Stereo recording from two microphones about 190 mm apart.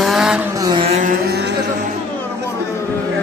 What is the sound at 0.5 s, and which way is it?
Vehicle, 20° right (ahead or behind).